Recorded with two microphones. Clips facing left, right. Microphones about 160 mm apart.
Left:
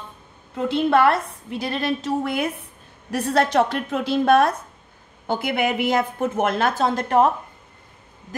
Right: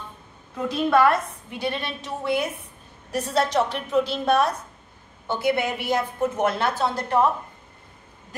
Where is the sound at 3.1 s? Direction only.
55° left (ahead or behind).